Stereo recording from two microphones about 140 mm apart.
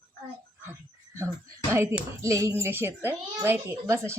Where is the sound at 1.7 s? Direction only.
20° right (ahead or behind).